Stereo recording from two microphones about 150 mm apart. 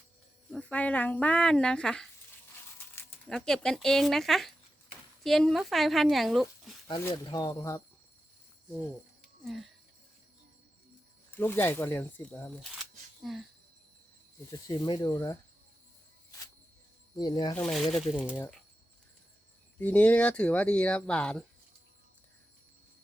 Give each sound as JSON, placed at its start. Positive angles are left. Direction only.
{"t": 0.5, "sound": "speech", "side_deg": 10}
{"t": 3.2, "sound": "speech", "side_deg": 5}
{"t": 7.1, "sound": "speech", "side_deg": 30}
{"t": 11.3, "sound": "speech", "side_deg": 15}
{"t": 12.5, "sound": "speech", "side_deg": 0}
{"t": 14.5, "sound": "speech", "side_deg": 25}
{"t": 17.2, "sound": "speech", "side_deg": 25}
{"t": 17.7, "sound": "speech", "side_deg": 0}
{"t": 19.8, "sound": "speech", "side_deg": 10}